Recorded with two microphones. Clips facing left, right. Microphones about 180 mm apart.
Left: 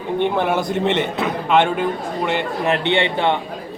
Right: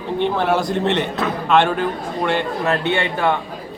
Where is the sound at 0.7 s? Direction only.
15° left (ahead or behind).